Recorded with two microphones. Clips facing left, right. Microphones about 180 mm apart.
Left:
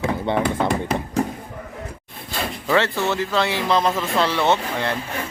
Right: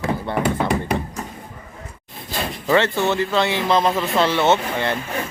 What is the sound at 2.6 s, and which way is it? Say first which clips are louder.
Speech: right 2 dB; centre (ahead or behind).